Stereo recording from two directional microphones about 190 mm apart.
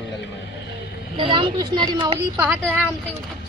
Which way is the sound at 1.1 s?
25° right (ahead or behind).